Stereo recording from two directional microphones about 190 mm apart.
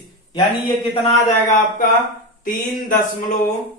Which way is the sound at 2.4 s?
45° left (ahead or behind).